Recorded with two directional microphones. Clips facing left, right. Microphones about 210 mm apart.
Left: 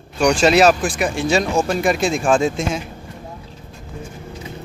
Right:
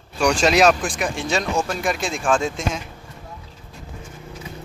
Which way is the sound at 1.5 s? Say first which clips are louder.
Left 5 dB; 30° left (ahead or behind).